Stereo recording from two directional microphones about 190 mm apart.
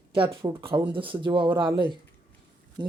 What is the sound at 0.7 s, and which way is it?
Speech, 25° right (ahead or behind).